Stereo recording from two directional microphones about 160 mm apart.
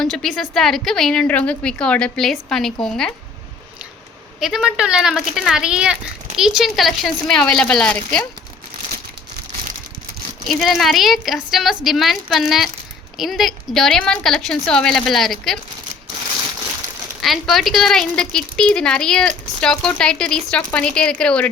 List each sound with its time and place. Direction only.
0.0 s speech: centre (ahead or behind)
4.4 s speech: 5° right (ahead or behind)
10.5 s speech: centre (ahead or behind)
17.2 s speech: centre (ahead or behind)